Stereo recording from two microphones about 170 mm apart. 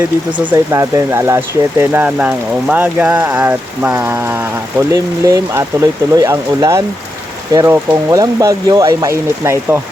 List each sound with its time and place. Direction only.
0.3 s speech: 20° right (ahead or behind)